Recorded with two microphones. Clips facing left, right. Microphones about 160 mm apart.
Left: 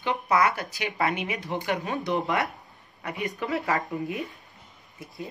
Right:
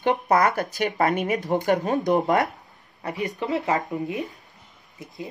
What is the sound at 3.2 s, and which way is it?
Speech, 20° right (ahead or behind).